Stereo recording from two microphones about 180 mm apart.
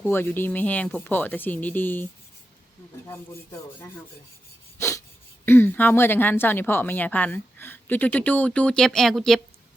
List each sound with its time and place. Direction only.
0.0 s speech: 10° left (ahead or behind)
4.8 s a sound: 15° left (ahead or behind)
5.5 s speech: 10° left (ahead or behind)